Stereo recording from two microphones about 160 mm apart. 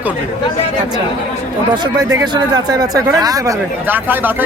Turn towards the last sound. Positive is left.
turn(degrees=-10)  # may be behind; listen again after turning